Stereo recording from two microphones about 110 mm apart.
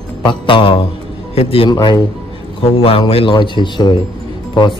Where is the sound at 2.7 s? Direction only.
55° left (ahead or behind).